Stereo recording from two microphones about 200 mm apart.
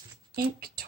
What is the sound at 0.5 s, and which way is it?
Speech, 50° right (ahead or behind).